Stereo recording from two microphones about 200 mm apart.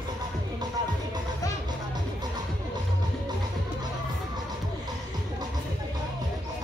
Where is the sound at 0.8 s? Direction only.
20° right (ahead or behind).